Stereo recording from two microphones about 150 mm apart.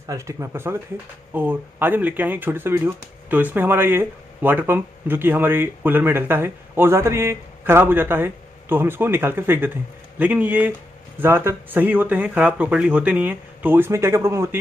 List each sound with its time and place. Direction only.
0.0 s speech: 20° right (ahead or behind)